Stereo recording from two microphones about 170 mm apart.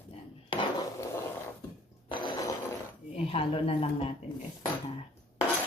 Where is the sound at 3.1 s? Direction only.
35° left (ahead or behind).